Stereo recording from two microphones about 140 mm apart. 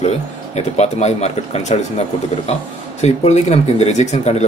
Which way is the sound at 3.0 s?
50° left (ahead or behind).